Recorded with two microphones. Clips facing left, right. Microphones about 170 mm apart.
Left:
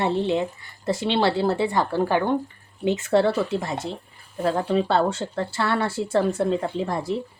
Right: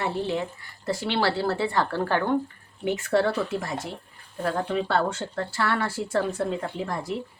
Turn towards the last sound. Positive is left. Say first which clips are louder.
# left 4 dB
turn(degrees=25)  # may be behind; listen again after turning